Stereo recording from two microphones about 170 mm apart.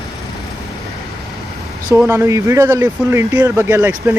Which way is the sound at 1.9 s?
15° right (ahead or behind).